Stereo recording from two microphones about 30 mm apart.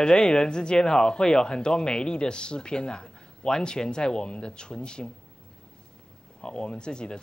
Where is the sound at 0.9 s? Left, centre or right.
Centre.